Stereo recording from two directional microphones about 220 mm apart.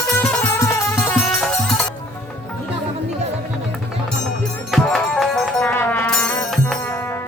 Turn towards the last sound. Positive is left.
turn(degrees=5)  # may be behind; listen again after turning